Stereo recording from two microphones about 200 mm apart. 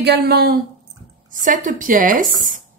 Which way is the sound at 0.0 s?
55° right (ahead or behind).